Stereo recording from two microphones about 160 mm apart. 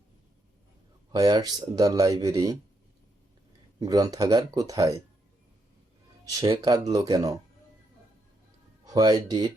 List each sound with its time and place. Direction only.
1.1 s speech: 25° right (ahead or behind)
3.8 s speech: 25° right (ahead or behind)
6.3 s speech: 20° right (ahead or behind)
8.8 s speech: 25° right (ahead or behind)